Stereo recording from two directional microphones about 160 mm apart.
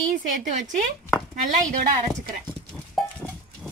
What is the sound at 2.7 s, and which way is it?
Goat, centre (ahead or behind).